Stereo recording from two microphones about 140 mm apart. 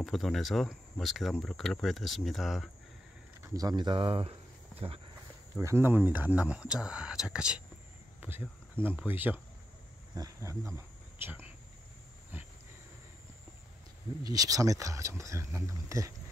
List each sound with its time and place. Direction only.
0.0 s speech: centre (ahead or behind)
3.4 s speech: 25° right (ahead or behind)
5.6 s speech: 20° right (ahead or behind)
10.1 s speech: 25° right (ahead or behind)
14.2 s speech: 25° right (ahead or behind)